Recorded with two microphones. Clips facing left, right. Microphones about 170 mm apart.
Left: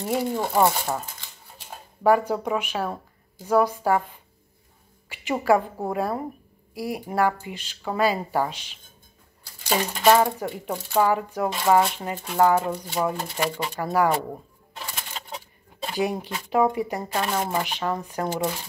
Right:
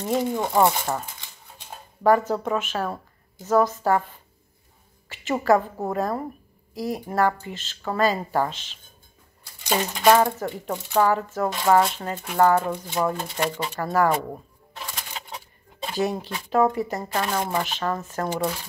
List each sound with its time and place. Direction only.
0.0 s speech: 10° left (ahead or behind)
2.0 s speech: 10° left (ahead or behind)
5.1 s speech: 10° left (ahead or behind)
10.0 s speech: 10° left (ahead or behind)
15.9 s speech: 15° left (ahead or behind)